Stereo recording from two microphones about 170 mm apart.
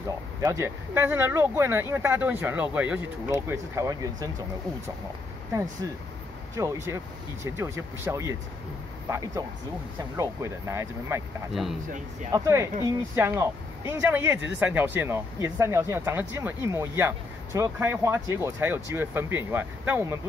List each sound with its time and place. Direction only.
0.4 s speech: 15° right (ahead or behind)
6.5 s speech: 15° right (ahead or behind)
12.3 s speech: 20° right (ahead or behind)